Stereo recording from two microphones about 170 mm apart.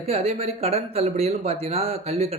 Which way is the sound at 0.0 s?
35° right (ahead or behind).